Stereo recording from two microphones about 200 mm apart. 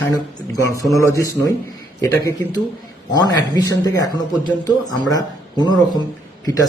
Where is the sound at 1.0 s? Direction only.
15° left (ahead or behind).